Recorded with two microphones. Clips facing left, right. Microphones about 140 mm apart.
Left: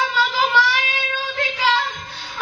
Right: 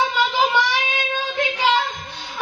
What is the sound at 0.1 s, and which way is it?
Child singing, 20° right (ahead or behind).